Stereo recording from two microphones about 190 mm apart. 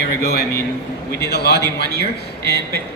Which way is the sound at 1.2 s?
60° left (ahead or behind).